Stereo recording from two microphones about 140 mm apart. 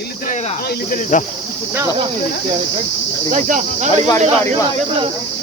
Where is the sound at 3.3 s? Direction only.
60° right (ahead or behind).